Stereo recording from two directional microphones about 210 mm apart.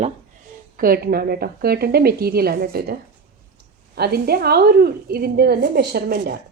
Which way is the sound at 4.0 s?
50° right (ahead or behind).